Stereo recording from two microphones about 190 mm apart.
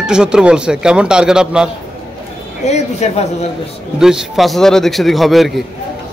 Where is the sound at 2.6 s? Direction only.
35° left (ahead or behind).